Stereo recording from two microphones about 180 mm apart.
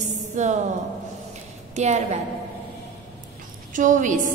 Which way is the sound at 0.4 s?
40° right (ahead or behind).